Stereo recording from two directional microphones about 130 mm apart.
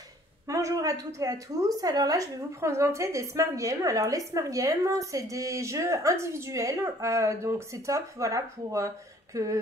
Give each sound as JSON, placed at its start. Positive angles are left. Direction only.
{"t": 0.5, "sound": "a woman's voice", "side_deg": -25}